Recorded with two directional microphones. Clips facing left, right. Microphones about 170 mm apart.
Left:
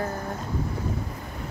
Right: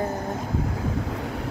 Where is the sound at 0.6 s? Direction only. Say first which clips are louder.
Right 3 dB; 85° right.